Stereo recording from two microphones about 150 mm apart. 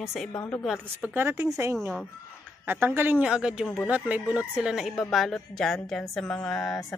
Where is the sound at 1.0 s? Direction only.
15° right (ahead or behind).